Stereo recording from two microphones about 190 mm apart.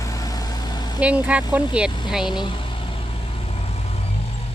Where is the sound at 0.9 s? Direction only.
5° right (ahead or behind).